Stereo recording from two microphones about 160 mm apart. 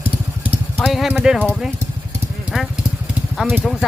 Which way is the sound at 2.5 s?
5° right (ahead or behind).